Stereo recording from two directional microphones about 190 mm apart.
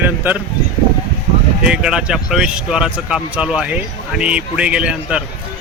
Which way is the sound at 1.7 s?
5° right (ahead or behind).